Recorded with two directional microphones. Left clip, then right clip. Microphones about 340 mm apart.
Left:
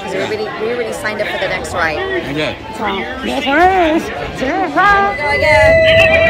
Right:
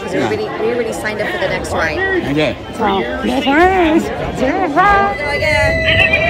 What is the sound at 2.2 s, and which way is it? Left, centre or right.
A woman's voice, centre.